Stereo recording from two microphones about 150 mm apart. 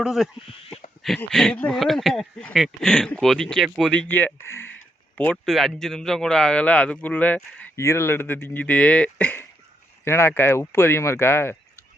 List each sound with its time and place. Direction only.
0.0 s speech: 5° right (ahead or behind); by 11.5 s 15° left (ahead or behind)